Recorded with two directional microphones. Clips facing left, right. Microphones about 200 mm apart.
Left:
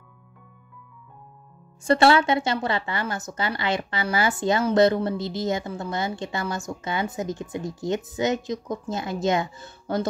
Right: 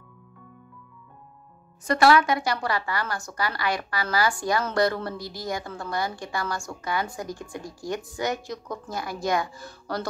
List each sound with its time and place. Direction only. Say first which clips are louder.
1.9 s a woman's voice: left 1 dB; 25° left (ahead or behind)